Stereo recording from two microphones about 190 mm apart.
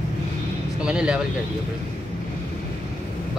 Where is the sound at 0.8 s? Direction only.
5° right (ahead or behind).